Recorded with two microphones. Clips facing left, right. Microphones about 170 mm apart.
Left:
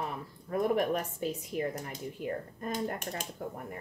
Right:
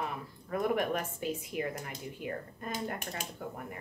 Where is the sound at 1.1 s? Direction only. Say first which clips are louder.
Left 2 dB; centre (ahead or behind).